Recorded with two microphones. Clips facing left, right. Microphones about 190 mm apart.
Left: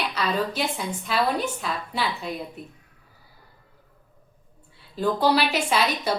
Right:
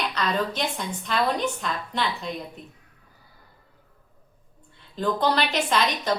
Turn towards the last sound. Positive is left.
turn(degrees=10)  # may be behind; listen again after turning